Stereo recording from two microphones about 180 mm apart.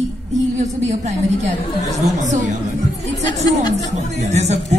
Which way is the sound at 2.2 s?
45° right (ahead or behind).